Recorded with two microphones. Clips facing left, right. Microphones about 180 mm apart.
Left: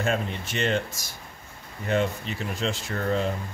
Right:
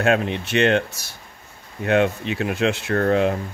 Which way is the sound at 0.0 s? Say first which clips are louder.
Right 7 dB; 75° right (ahead or behind).